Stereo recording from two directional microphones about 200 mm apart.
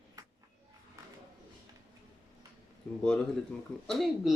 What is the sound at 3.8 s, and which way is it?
Speech, centre (ahead or behind).